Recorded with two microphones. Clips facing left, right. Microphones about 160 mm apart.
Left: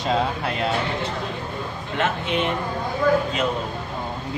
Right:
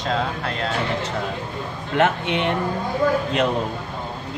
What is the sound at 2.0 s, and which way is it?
Speech, 70° right (ahead or behind).